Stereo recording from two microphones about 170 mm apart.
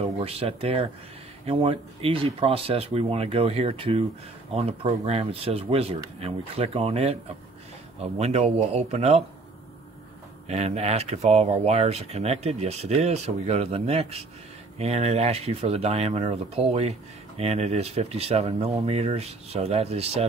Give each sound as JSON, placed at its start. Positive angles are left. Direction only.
{"t": 0.0, "sound": "speech", "side_deg": -35}
{"t": 10.5, "sound": "speech", "side_deg": -40}